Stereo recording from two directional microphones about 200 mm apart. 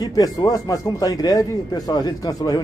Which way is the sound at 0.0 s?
20° left (ahead or behind).